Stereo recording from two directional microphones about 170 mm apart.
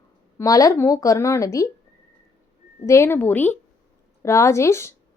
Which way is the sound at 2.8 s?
15° left (ahead or behind).